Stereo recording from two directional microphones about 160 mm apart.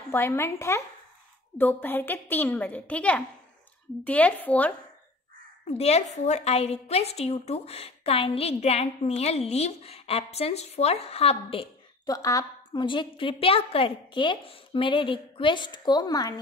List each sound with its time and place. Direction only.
0.1 s a woman's voice: 15° left (ahead or behind)
5.7 s a woman's voice: 40° left (ahead or behind)
12.1 s a woman's voice: 20° left (ahead or behind)